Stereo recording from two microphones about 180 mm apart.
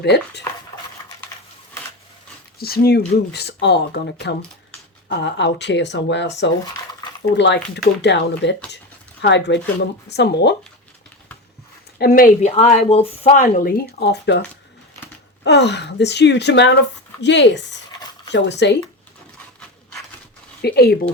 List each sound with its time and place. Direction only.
0.0 s speech: 65° left (ahead or behind)
2.6 s speech: 60° left (ahead or behind); by 6.3 s 75° left (ahead or behind)
7.3 s speech: 75° left (ahead or behind)
11.9 s speech: 55° left (ahead or behind); by 13.3 s 35° left (ahead or behind)
13.3 s speech: 45° left (ahead or behind); by 14.4 s 70° left (ahead or behind)
15.4 s speech: 70° left (ahead or behind)
20.6 s speech: 60° left (ahead or behind)